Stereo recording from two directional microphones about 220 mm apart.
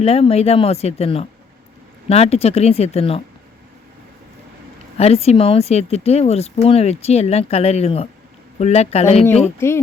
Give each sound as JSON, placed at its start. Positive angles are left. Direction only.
{"t": 0.0, "sound": "speech", "side_deg": 25}
{"t": 4.9, "sound": "speech", "side_deg": 30}
{"t": 9.6, "sound": "speech", "side_deg": 10}